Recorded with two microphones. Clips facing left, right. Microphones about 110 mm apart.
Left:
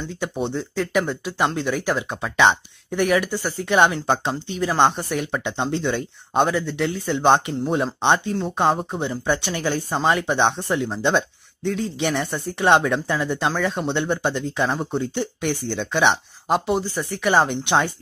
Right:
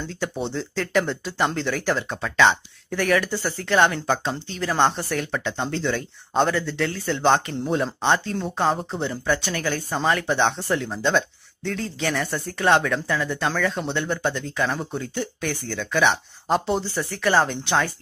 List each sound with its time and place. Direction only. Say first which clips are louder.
0.1 s speech: left 3 dB; 15° left (ahead or behind)
16.4 s speech: left 1 dB; 5° left (ahead or behind)
16.9 s speech: left 1 dB; 15° left (ahead or behind)